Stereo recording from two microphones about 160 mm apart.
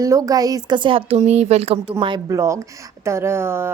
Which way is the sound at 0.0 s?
20° right (ahead or behind).